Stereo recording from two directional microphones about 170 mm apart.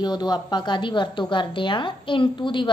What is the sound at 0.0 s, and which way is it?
A woman's voice, 25° left (ahead or behind).